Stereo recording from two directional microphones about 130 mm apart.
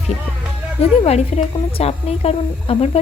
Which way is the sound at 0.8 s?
50° left (ahead or behind).